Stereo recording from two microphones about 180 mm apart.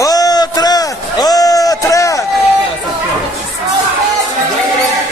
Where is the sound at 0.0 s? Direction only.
20° left (ahead or behind).